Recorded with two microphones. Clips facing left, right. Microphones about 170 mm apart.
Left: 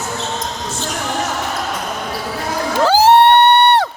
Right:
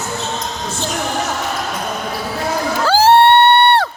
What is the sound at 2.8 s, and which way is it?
Crowd, 15° left (ahead or behind).